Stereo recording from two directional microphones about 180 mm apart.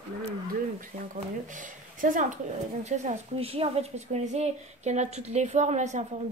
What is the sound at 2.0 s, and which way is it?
A woman's voice, 45° right (ahead or behind).